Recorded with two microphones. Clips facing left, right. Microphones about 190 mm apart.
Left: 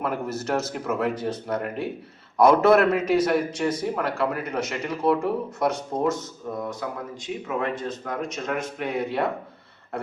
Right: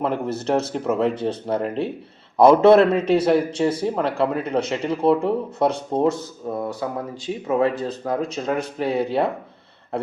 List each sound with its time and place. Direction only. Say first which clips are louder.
0.0 s a man's voice: right 4 dB; 30° right (ahead or behind)